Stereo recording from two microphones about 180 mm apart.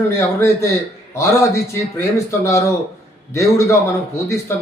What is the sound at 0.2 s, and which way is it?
Speech, 15° left (ahead or behind).